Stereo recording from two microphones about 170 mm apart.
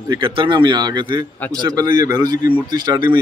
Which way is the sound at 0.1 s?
30° right (ahead or behind).